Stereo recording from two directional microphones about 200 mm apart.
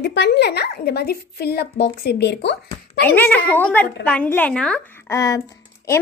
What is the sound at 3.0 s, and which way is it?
A woman's voice, 5° left (ahead or behind).